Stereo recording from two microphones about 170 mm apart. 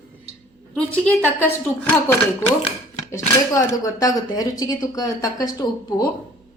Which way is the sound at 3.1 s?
20° left (ahead or behind).